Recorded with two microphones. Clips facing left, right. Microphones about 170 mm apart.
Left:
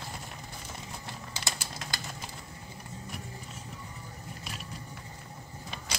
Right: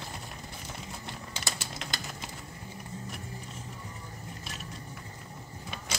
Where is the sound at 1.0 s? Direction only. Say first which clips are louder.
Even; 20° right (ahead or behind).